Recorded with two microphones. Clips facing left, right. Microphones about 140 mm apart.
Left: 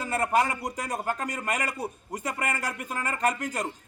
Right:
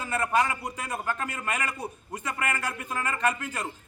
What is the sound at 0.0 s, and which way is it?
A man's voice, 40° left (ahead or behind).